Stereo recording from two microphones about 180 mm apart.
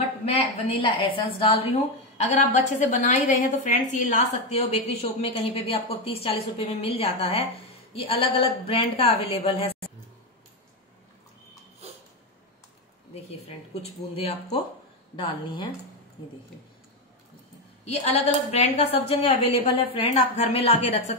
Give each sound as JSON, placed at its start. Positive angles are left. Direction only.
{"t": 0.2, "sound": "a woman's voice", "side_deg": 35}
{"t": 13.8, "sound": "a woman's voice", "side_deg": 35}
{"t": 17.8, "sound": "a woman's voice", "side_deg": 35}